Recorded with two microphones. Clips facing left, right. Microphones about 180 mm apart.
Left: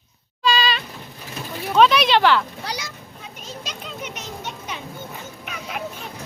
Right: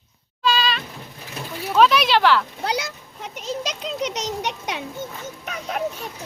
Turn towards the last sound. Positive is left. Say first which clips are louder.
# right 3 dB
turn(degrees=-40)  # may be behind; listen again after turning